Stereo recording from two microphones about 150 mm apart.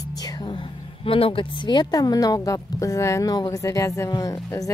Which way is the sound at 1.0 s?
40° left (ahead or behind).